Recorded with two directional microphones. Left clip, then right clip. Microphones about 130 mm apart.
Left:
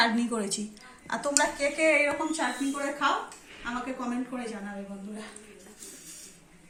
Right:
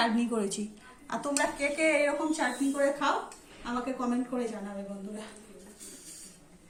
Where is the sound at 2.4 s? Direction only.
15° right (ahead or behind).